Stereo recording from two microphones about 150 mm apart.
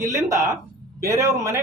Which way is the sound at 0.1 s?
20° right (ahead or behind).